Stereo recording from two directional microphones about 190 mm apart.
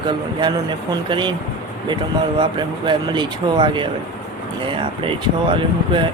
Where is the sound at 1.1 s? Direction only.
25° right (ahead or behind).